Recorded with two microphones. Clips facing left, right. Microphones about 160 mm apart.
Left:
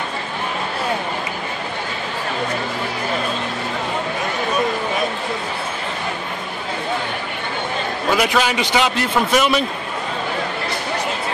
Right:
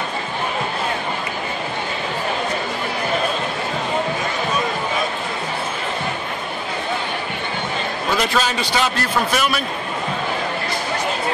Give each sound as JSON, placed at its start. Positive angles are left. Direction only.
{"t": 8.1, "sound": "a man's voice", "side_deg": 15}